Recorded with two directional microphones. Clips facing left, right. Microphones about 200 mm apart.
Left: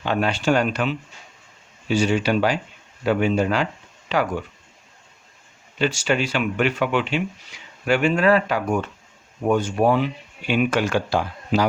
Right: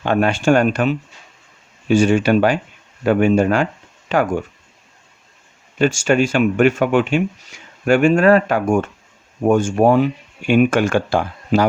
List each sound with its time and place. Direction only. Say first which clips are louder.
0.0 s speech: right 5 dB; 50° right (ahead or behind)
5.8 s speech: right 6 dB; 50° right (ahead or behind)